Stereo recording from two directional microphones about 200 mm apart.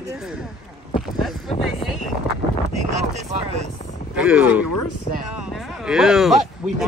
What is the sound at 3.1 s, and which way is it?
Speech, 35° right (ahead or behind).